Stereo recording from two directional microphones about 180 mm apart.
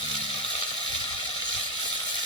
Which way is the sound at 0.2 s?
30° left (ahead or behind).